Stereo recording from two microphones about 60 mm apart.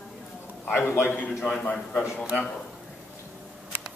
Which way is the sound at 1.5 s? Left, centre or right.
Left.